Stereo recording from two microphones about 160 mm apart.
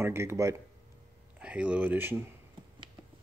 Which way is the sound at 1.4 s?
5° right (ahead or behind).